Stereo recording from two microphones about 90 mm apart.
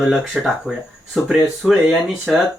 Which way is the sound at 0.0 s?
5° right (ahead or behind).